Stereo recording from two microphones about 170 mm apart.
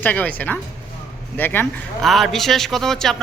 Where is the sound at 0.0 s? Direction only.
10° left (ahead or behind).